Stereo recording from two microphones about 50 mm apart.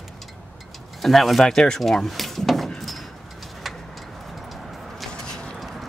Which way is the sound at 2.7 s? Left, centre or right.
Centre.